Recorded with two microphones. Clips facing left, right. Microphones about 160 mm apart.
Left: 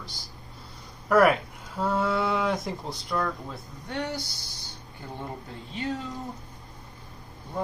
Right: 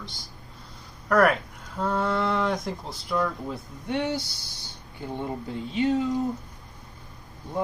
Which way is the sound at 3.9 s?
20° right (ahead or behind).